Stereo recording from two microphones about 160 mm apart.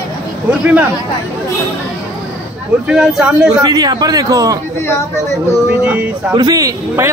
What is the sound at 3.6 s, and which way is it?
Speech, 25° right (ahead or behind).